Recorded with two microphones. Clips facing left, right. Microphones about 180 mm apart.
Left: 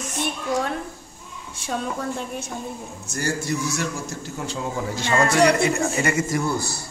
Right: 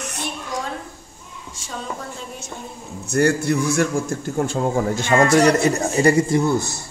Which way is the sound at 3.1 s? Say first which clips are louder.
Right 8 dB; 60° right (ahead or behind).